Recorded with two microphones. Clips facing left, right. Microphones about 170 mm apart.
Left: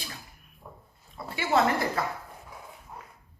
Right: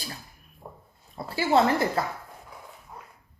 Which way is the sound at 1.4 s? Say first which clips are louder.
Right 3 dB; 30° right (ahead or behind).